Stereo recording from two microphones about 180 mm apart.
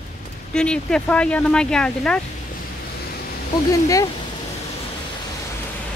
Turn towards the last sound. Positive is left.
turn(degrees=20)  # may be behind; listen again after turning